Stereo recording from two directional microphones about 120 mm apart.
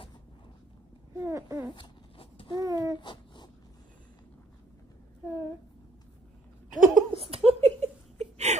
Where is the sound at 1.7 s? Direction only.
45° left (ahead or behind).